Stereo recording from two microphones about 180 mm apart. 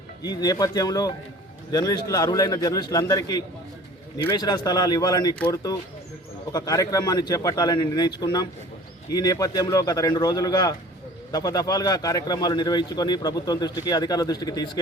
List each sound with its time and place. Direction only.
0.2 s a man's voice: 20° left (ahead or behind)